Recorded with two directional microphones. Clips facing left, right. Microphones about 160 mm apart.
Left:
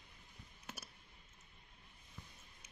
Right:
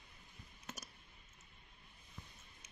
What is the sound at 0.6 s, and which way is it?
Clicking, 10° left (ahead or behind).